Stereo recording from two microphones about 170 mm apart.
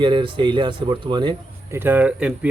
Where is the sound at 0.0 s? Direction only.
25° right (ahead or behind).